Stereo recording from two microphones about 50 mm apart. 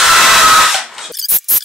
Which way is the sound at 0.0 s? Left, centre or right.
Centre.